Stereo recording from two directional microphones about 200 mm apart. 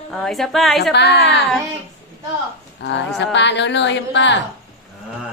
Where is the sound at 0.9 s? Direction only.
60° left (ahead or behind).